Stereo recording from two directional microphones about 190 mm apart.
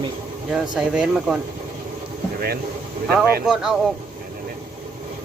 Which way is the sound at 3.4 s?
5° right (ahead or behind).